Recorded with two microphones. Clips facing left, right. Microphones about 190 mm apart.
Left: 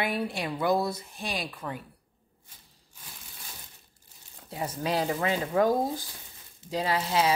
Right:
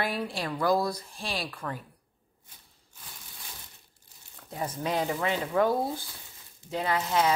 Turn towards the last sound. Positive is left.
turn(degrees=30)  # may be behind; listen again after turning